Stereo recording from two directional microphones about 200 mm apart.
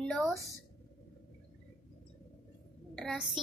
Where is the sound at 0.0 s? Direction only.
Centre (ahead or behind).